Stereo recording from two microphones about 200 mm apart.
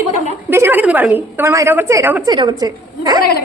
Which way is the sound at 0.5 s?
10° right (ahead or behind).